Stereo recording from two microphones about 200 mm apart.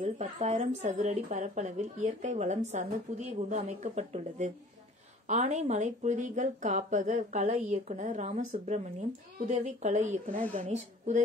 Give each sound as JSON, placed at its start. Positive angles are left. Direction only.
{"t": 0.0, "sound": "speech", "side_deg": -35}